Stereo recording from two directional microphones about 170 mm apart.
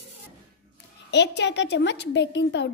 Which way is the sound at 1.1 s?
90° left.